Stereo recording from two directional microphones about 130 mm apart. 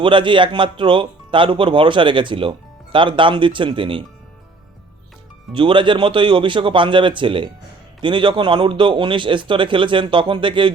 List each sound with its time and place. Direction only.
0.0 s speech: 40° right (ahead or behind)
5.5 s speech: 40° right (ahead or behind)